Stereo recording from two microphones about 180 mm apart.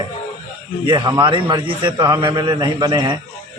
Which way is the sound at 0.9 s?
25° right (ahead or behind).